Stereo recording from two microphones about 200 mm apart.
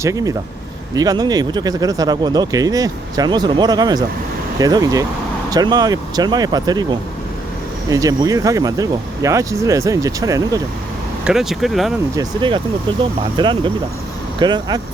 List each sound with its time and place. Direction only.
0.0 s speech: 15° right (ahead or behind)
11.3 s speech: centre (ahead or behind)
12.1 s speech: 25° right (ahead or behind)